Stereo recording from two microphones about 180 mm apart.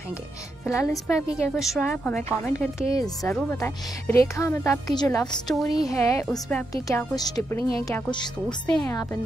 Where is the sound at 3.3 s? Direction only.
10° left (ahead or behind).